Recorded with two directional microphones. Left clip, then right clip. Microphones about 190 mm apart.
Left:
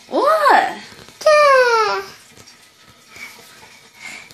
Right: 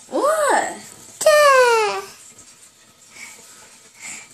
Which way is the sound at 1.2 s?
30° right (ahead or behind).